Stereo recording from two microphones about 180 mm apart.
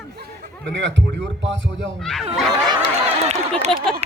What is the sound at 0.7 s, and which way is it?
Speech, 85° right.